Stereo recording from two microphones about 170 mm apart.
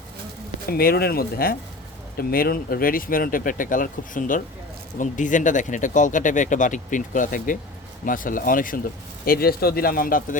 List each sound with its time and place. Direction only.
0.7 s speech: 60° left (ahead or behind)